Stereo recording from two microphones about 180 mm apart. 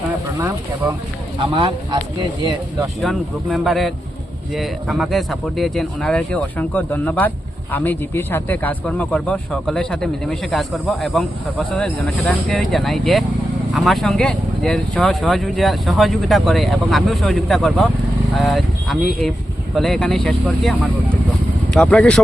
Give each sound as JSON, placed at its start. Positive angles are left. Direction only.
{"t": 0.3, "sound": "a sound", "side_deg": -20}
{"t": 1.5, "sound": "speech", "side_deg": -25}
{"t": 3.0, "sound": "speech", "side_deg": 0}